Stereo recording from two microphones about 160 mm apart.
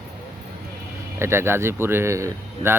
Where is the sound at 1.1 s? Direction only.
15° right (ahead or behind).